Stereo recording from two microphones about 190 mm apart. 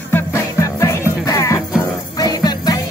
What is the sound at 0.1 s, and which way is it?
Music, 15° left (ahead or behind).